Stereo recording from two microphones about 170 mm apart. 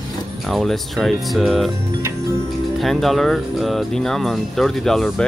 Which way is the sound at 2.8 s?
Centre (ahead or behind).